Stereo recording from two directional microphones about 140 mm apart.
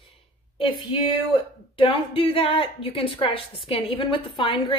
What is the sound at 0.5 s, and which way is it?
A woman's voice, 40° left (ahead or behind).